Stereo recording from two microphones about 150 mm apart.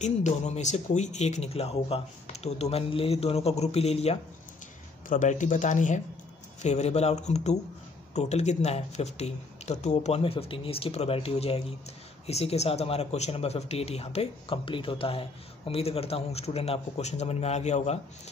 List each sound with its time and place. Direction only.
0.0 s speech: 50° left (ahead or behind)
5.1 s speech: 55° left (ahead or behind)